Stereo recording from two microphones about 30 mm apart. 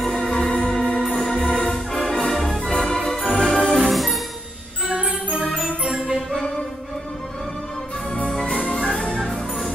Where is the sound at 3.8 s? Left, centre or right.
Centre.